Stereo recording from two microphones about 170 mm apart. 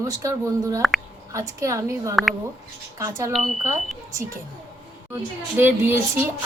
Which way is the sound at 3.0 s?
15° right (ahead or behind).